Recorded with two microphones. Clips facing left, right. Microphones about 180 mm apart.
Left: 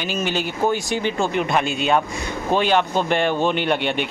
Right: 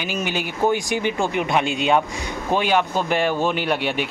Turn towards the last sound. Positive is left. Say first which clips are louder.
# left 1 dB
turn(degrees=-5)  # may be behind; listen again after turning